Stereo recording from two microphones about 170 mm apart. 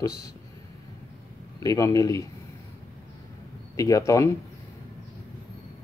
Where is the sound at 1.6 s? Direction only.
20° left (ahead or behind).